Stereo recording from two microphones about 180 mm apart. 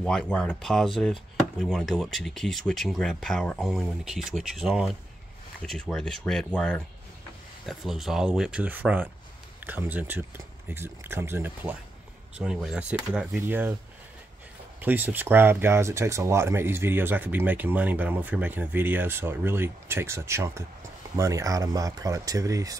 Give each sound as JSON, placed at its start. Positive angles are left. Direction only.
{"t": 0.0, "sound": "speech", "side_deg": 5}
{"t": 14.8, "sound": "speech", "side_deg": -10}